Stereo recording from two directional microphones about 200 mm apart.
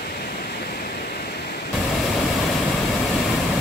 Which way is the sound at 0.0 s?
50° left (ahead or behind).